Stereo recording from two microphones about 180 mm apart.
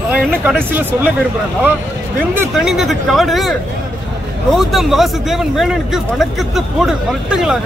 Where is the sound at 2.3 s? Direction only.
15° right (ahead or behind).